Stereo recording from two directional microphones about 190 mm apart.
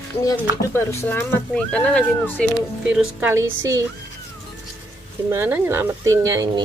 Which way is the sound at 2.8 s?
5° right (ahead or behind).